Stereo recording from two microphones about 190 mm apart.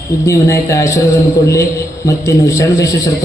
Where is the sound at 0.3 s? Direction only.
15° left (ahead or behind).